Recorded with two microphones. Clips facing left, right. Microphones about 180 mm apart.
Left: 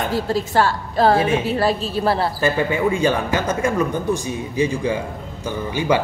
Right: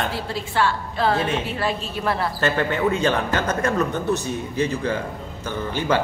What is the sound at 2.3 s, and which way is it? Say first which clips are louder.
Speech: left 2 dB; 10° left (ahead or behind).